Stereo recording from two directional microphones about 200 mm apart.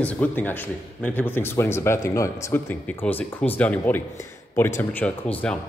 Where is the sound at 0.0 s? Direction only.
10° left (ahead or behind).